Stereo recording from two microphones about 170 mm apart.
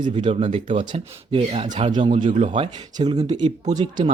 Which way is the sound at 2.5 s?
25° right (ahead or behind).